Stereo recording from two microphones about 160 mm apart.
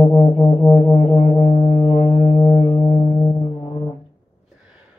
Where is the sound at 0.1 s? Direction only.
35° left (ahead or behind).